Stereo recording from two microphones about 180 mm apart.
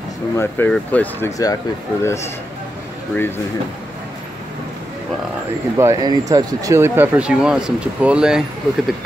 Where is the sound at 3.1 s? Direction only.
10° left (ahead or behind).